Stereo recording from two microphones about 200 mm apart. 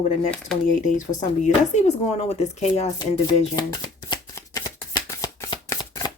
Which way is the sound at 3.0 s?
20° left (ahead or behind).